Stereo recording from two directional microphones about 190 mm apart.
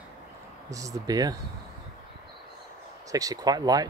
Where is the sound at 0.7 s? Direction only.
15° right (ahead or behind).